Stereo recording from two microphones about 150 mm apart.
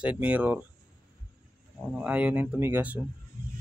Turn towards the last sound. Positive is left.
turn(degrees=-10)  # may be behind; listen again after turning